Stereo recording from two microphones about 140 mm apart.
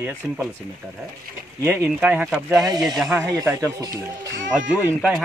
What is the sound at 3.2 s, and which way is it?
Speech, 20° right (ahead or behind).